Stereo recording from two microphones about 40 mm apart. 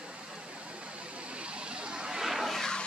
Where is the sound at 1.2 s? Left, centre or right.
Right.